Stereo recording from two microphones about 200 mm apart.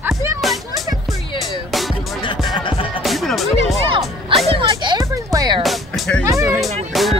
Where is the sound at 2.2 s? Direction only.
25° left (ahead or behind).